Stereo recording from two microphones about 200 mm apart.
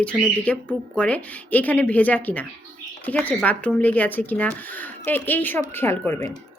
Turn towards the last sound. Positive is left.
turn(degrees=15)  # may be behind; listen again after turning